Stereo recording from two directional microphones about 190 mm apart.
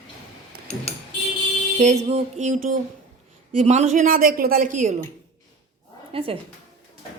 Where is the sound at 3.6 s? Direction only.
35° right (ahead or behind).